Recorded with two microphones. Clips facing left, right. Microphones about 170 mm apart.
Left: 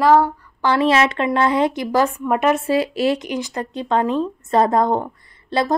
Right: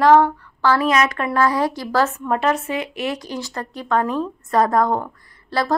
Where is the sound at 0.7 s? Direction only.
25° left (ahead or behind).